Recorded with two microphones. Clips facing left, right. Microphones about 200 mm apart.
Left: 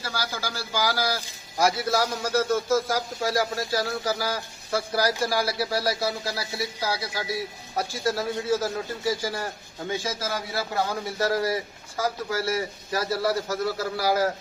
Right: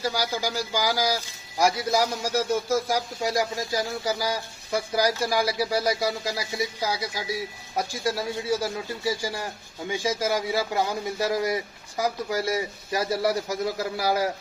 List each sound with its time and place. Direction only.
0.0 s speech: 15° right (ahead or behind)